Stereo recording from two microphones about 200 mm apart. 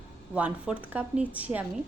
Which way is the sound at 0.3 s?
5° right (ahead or behind).